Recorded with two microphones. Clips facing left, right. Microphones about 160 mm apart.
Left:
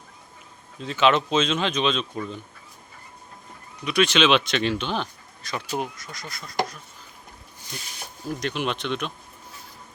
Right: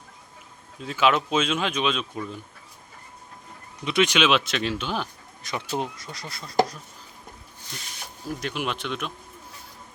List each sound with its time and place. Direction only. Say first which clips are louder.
0.8 s speech: left 2 dB; 5° right (ahead or behind)
3.8 s speech: left 1 dB; 20° right (ahead or behind)
5.4 s speech: even; 20° right (ahead or behind)
8.4 s speech: left 3 dB; 5° right (ahead or behind)